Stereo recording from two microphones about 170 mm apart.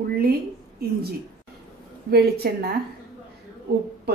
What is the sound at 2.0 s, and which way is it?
Speech, 65° right (ahead or behind).